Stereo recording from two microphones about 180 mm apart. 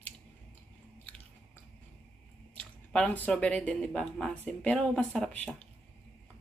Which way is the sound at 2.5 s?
5° left (ahead or behind).